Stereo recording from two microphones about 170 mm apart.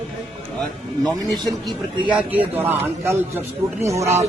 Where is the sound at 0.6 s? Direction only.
Centre (ahead or behind).